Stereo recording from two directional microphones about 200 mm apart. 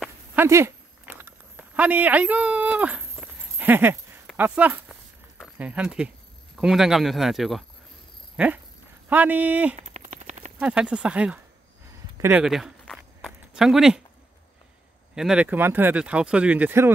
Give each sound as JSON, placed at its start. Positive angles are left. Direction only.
{"t": 0.0, "sound": "a sound", "side_deg": -10}
{"t": 3.5, "sound": "speech", "side_deg": -10}
{"t": 9.8, "sound": "a sound", "side_deg": -35}
{"t": 10.6, "sound": "speech", "side_deg": -5}
{"t": 12.2, "sound": "walk", "side_deg": -10}
{"t": 15.1, "sound": "speech", "side_deg": -5}